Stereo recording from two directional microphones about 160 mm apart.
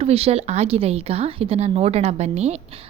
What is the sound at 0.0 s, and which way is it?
A woman's voice, 40° right (ahead or behind).